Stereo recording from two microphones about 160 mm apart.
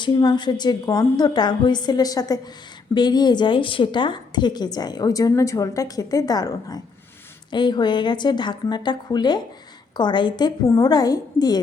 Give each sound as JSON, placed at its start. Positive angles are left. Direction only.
{"t": 0.0, "sound": "a woman's voice", "side_deg": 25}